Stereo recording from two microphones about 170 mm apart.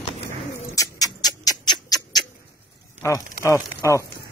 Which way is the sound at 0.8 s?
20° left (ahead or behind).